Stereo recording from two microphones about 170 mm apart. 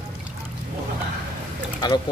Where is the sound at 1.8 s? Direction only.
25° left (ahead or behind).